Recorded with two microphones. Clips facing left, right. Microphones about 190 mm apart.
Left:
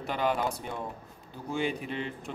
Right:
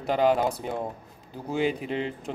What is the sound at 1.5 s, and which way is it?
Speech, 20° right (ahead or behind).